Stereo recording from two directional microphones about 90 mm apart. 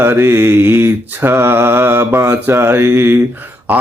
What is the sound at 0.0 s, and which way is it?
Mantra, 25° right (ahead or behind).